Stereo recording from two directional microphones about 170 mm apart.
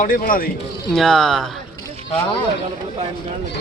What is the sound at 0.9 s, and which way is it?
Speech, centre (ahead or behind).